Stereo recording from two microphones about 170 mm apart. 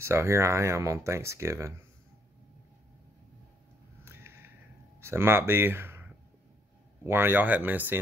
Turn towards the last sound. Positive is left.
turn(degrees=-10)  # may be behind; listen again after turning